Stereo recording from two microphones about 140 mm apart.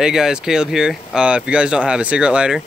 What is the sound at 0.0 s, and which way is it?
Speech, 5° right (ahead or behind).